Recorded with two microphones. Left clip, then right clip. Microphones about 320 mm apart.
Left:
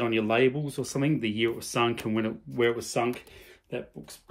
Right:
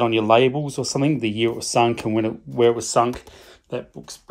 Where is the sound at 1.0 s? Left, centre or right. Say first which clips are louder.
Right 6 dB; centre.